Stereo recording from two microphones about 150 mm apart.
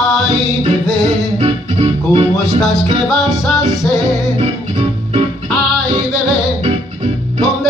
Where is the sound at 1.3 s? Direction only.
45° right (ahead or behind).